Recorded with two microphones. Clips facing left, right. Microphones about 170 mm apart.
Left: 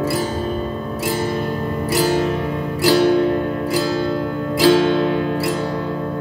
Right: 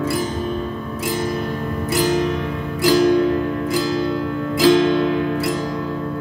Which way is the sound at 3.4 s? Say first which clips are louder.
Left 1 dB; 35° left (ahead or behind).